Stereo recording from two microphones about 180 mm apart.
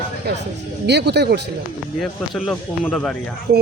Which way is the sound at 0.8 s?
70° right (ahead or behind).